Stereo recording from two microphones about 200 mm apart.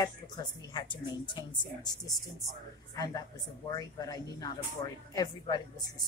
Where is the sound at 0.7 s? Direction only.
20° left (ahead or behind).